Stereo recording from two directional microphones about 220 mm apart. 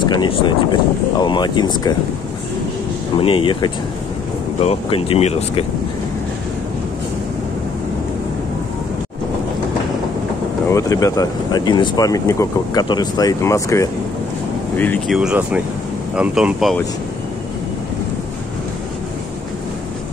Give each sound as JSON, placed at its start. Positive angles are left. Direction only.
{"t": 0.0, "sound": "speech", "side_deg": 20}
{"t": 3.2, "sound": "speech", "side_deg": 25}
{"t": 10.7, "sound": "speech", "side_deg": 15}
{"t": 15.1, "sound": "speech", "side_deg": -5}